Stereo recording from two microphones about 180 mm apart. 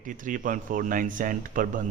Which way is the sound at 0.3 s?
45° right (ahead or behind).